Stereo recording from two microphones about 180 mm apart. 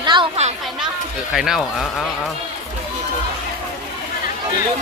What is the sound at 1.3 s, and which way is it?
Speech, centre (ahead or behind).